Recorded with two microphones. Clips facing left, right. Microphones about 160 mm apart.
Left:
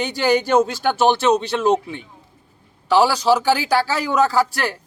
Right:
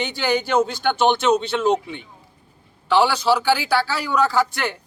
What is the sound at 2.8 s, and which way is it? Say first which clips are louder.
A man's voice: left 2 dB; 40° left (ahead or behind).